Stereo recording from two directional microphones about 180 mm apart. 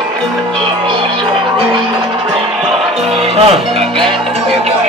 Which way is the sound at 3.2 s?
35° right (ahead or behind).